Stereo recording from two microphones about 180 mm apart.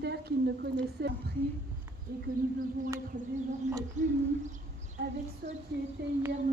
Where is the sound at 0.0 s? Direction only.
65° right (ahead or behind).